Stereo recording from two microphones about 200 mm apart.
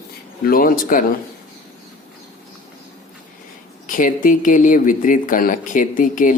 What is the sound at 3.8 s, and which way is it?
Speech, 40° left (ahead or behind).